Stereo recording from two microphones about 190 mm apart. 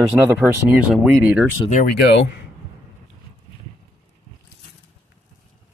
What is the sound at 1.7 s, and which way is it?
Speech, 45° left (ahead or behind).